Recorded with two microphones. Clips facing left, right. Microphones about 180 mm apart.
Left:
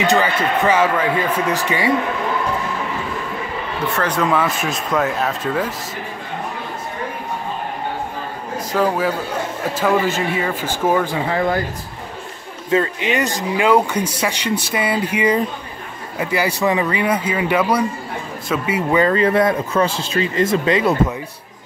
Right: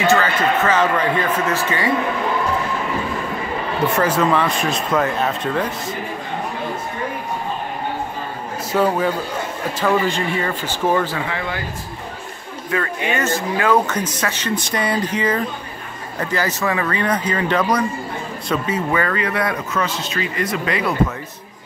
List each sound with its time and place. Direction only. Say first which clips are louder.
0.0 s speech: even; 15° left (ahead or behind)
4.0 s speech: even; 5° right (ahead or behind)
8.7 s speech: right 1 dB; centre (ahead or behind)
11.2 s speech: left 7 dB; 40° left (ahead or behind)
12.7 s speech: left 4 dB; 20° left (ahead or behind)